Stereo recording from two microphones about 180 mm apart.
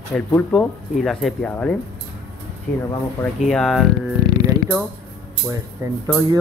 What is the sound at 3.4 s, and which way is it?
Speech, 5° left (ahead or behind).